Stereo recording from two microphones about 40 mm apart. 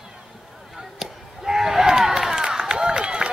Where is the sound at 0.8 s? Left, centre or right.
Centre.